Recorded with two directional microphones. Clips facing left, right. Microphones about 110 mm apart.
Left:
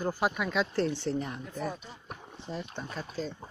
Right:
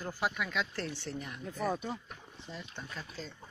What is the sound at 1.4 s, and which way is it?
Speech, 45° right (ahead or behind).